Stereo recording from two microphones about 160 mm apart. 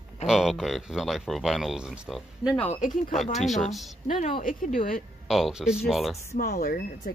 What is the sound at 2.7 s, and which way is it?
Speech, 50° left (ahead or behind).